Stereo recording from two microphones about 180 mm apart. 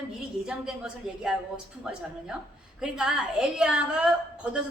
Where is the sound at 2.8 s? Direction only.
5° right (ahead or behind).